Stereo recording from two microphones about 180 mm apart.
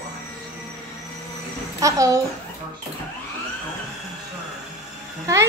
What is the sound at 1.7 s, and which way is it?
Speech, 20° right (ahead or behind).